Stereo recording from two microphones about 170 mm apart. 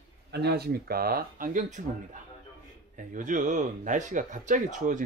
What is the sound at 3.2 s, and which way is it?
Speech, 50° right (ahead or behind).